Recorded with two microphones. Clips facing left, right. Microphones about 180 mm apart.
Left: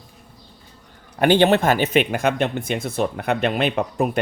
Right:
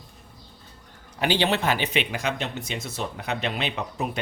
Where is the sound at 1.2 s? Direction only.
50° left (ahead or behind).